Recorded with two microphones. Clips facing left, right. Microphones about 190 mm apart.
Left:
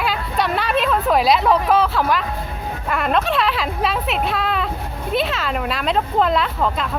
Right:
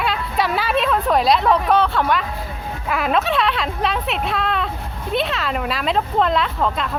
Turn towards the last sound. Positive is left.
turn(degrees=0)  # may be behind; listen again after turning